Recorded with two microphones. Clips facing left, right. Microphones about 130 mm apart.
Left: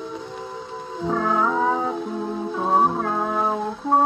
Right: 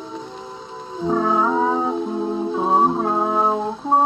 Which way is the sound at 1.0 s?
20° right (ahead or behind).